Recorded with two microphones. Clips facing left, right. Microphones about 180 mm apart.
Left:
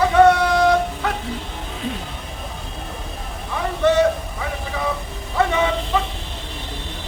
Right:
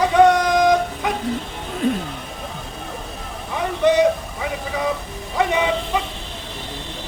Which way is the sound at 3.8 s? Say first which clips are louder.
Right 1 dB; 15° right (ahead or behind).